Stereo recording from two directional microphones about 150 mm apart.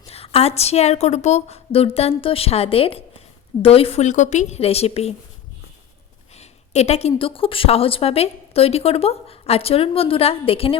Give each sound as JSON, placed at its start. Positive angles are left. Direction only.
{"t": 0.1, "sound": "a woman's voice", "side_deg": 40}
{"t": 6.3, "sound": "a woman's voice", "side_deg": 45}